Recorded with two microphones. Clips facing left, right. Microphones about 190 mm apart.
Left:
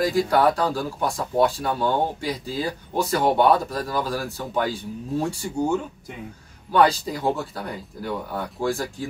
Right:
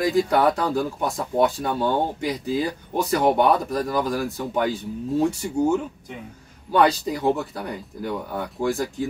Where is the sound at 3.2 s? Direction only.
20° right (ahead or behind).